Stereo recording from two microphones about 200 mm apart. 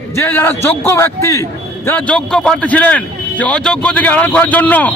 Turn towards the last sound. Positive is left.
turn(degrees=10)  # may be behind; listen again after turning